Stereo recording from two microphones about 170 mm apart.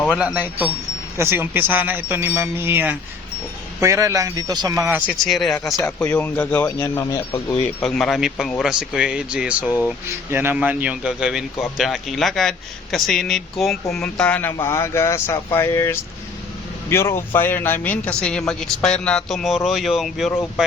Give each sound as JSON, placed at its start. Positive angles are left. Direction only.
{"t": 0.1, "sound": "wind chime", "side_deg": -5}
{"t": 3.8, "sound": "speech", "side_deg": -15}
{"t": 5.2, "sound": "speech", "side_deg": 0}
{"t": 7.8, "sound": "speech", "side_deg": 0}
{"t": 10.3, "sound": "wind chime", "side_deg": -10}
{"t": 11.6, "sound": "speech", "side_deg": 0}